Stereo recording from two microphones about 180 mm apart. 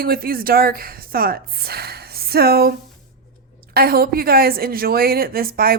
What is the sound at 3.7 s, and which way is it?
A woman's voice, 55° right (ahead or behind).